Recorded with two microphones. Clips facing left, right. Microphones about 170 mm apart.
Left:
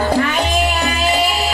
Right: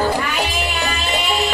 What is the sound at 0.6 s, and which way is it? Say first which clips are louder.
Music: left 5 dB; 40° left (ahead or behind).